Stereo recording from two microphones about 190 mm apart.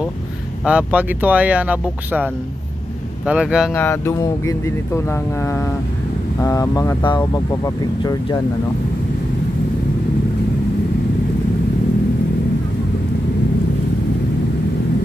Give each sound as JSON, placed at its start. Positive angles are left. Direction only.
{"t": 0.7, "sound": "speech", "side_deg": -5}
{"t": 3.7, "sound": "speech", "side_deg": 10}